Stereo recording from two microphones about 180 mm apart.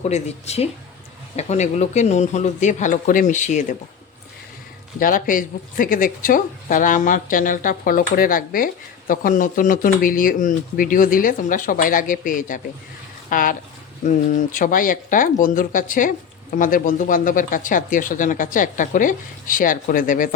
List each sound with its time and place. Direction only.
0.0 s speech: 40° left (ahead or behind)
4.9 s speech: 50° left (ahead or behind)